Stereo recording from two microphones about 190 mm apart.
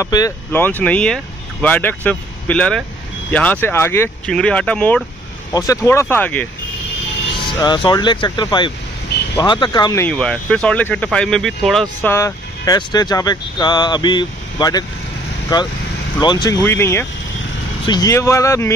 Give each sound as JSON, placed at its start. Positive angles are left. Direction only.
{"t": 0.0, "sound": "speech", "side_deg": 15}
{"t": 7.3, "sound": "speech", "side_deg": 25}
{"t": 10.0, "sound": "speech", "side_deg": 5}
{"t": 12.1, "sound": "speech", "side_deg": 15}
{"t": 16.2, "sound": "speech", "side_deg": 20}